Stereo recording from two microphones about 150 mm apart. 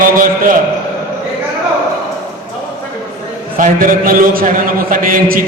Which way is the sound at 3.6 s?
65° right (ahead or behind).